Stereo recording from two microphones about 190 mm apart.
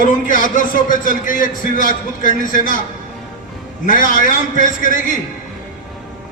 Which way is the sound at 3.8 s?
45° left (ahead or behind).